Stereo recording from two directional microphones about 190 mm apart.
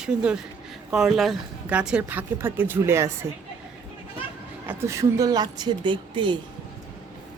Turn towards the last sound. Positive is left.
turn(degrees=-25)  # may be behind; listen again after turning